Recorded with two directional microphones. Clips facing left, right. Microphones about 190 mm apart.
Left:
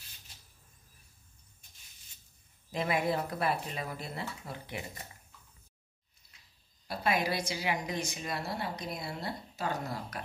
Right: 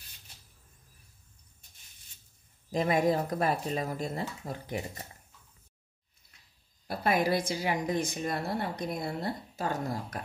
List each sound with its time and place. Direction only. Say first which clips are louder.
2.7 s speech: right 5 dB; 40° right (ahead or behind)
6.9 s a woman's voice: right 4 dB; 50° right (ahead or behind)